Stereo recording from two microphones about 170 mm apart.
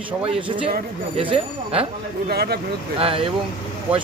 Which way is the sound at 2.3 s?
70° right (ahead or behind).